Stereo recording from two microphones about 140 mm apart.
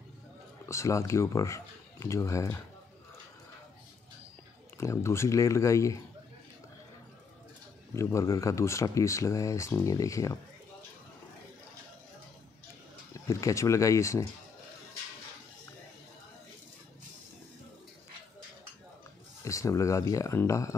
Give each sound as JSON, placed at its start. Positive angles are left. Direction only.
{"t": 0.7, "sound": "speech", "side_deg": 20}
{"t": 4.7, "sound": "speech", "side_deg": 20}
{"t": 7.9, "sound": "speech", "side_deg": 20}
{"t": 13.1, "sound": "speech", "side_deg": 20}
{"t": 19.4, "sound": "speech", "side_deg": 20}